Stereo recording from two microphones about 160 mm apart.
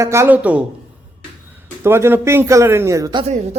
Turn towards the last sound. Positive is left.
turn(degrees=-20)  # may be behind; listen again after turning